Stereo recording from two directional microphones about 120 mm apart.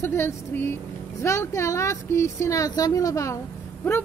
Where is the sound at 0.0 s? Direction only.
20° left (ahead or behind).